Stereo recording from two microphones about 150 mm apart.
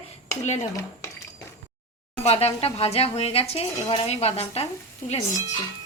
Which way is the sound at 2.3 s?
45° left (ahead or behind).